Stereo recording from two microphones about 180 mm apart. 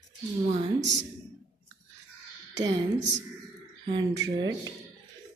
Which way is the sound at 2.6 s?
80° right.